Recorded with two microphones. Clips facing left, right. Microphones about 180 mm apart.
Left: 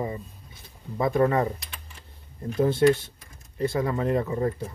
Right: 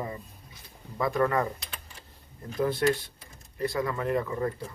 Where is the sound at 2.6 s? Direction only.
25° left (ahead or behind).